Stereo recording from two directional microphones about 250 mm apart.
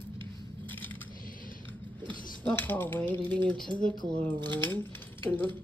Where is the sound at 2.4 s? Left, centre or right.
Centre.